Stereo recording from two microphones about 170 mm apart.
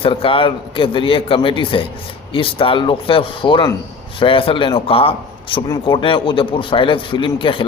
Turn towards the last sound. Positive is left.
turn(degrees=30)  # may be behind; listen again after turning